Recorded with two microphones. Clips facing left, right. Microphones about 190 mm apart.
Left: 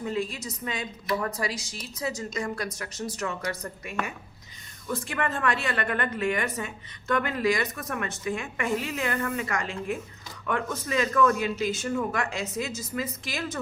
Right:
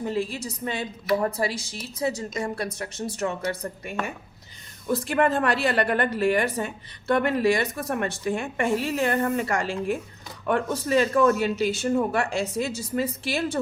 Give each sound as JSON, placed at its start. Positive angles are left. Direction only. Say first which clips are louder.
{"t": 0.0, "sound": "a woman's voice", "louder": "right 3 dB", "side_deg": -30}